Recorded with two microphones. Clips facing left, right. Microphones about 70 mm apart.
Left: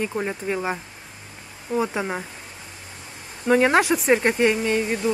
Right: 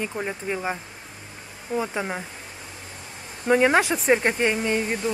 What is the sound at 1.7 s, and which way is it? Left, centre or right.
Speech, centre.